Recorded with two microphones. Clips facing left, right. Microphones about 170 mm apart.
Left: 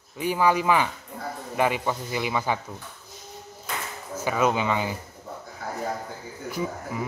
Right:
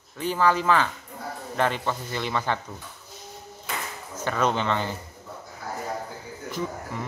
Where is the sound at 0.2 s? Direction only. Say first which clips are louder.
Left 1 dB; 10° left (ahead or behind).